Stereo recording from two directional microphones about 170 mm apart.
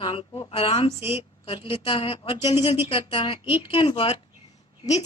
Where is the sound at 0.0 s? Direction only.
30° left (ahead or behind).